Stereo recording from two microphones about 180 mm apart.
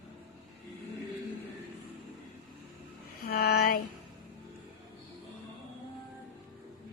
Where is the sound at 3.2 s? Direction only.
60° left (ahead or behind).